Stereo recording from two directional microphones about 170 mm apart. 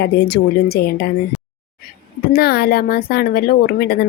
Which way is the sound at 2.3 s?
65° left (ahead or behind).